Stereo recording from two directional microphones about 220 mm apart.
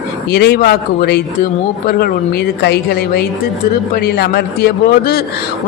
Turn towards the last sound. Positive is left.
turn(degrees=45)  # may be behind; listen again after turning